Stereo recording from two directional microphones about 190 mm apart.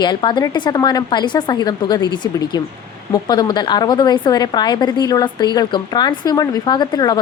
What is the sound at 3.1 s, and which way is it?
A woman's voice, 20° left (ahead or behind).